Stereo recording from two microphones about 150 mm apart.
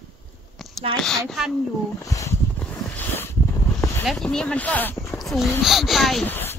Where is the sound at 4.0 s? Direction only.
Centre (ahead or behind).